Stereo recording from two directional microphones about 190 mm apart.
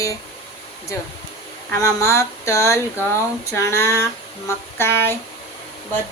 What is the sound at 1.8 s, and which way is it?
A woman's voice, 15° left (ahead or behind).